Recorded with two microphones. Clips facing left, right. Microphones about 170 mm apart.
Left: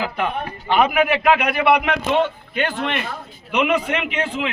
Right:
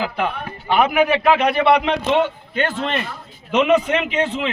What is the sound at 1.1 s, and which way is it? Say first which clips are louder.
Speech: right 2 dB; 25° right (ahead or behind).